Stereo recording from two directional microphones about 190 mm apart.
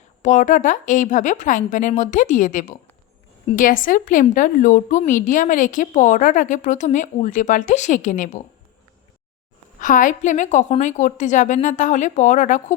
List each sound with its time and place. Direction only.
0.2 s a woman's voice: 40° left (ahead or behind)
9.8 s a woman's voice: 45° left (ahead or behind)